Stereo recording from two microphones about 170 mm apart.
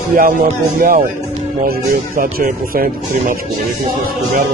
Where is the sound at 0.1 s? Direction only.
50° right (ahead or behind).